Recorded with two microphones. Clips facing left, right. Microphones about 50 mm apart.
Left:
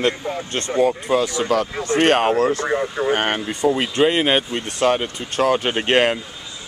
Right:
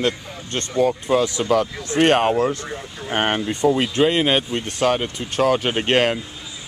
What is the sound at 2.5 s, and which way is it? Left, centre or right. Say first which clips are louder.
Speech: left 8 dB; left.